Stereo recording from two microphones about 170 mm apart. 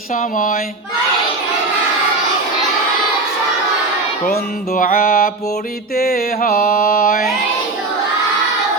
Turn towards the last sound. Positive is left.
turn(degrees=55)  # may be behind; listen again after turning